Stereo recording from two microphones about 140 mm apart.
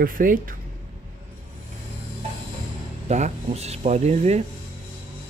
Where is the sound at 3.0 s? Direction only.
55° right (ahead or behind).